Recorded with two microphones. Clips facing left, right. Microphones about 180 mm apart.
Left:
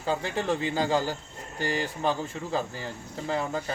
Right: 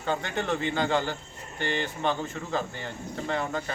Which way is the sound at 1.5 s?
40° left (ahead or behind).